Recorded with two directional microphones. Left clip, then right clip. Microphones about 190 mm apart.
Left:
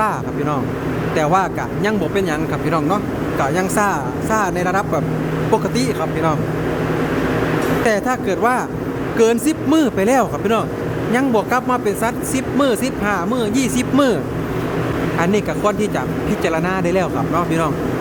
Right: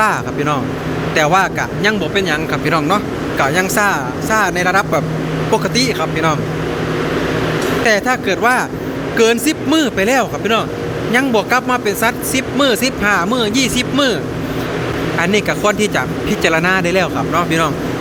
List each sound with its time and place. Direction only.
1.1 s speech: 10° left (ahead or behind)
7.9 s speech: 10° left (ahead or behind)
13.7 s speech: 15° left (ahead or behind)
15.2 s speech: 5° left (ahead or behind)